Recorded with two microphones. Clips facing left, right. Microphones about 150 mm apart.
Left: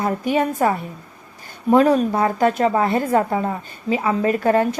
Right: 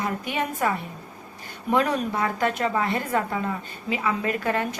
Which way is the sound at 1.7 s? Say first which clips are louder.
Left 8 dB; 35° left (ahead or behind).